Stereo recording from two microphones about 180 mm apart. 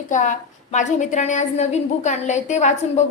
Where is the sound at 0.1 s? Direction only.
45° left (ahead or behind).